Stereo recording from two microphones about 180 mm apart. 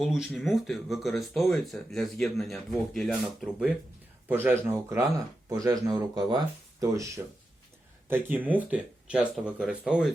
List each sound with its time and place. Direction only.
0.0 s speech: centre (ahead or behind)